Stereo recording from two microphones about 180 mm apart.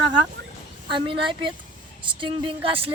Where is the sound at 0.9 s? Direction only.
30° right (ahead or behind).